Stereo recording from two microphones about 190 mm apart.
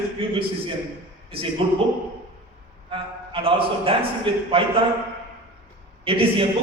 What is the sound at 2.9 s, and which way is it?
A man's voice, 30° right (ahead or behind).